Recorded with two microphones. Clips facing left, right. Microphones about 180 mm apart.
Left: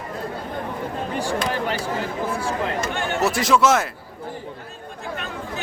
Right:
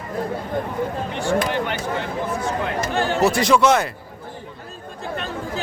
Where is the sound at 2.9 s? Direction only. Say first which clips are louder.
Right 4 dB; 35° right (ahead or behind).